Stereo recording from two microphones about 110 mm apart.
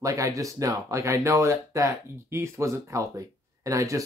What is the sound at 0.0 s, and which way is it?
Speech, 30° right (ahead or behind).